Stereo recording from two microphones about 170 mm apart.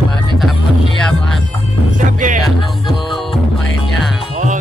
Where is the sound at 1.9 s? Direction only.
50° right (ahead or behind).